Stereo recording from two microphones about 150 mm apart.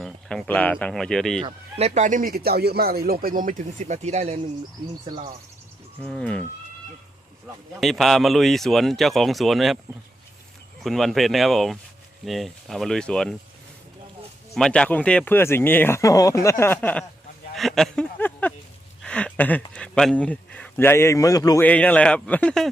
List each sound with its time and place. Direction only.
0.0 s speech: 5° left (ahead or behind)
1.8 s speech: 55° right (ahead or behind)
6.0 s speech: 5° left (ahead or behind)
7.8 s speech: centre (ahead or behind)
10.8 s speech: centre (ahead or behind)
14.5 s speech: 5° left (ahead or behind)
17.5 s a sound: centre (ahead or behind)
18.2 s speech: 10° left (ahead or behind)
21.6 s speech: 10° left (ahead or behind)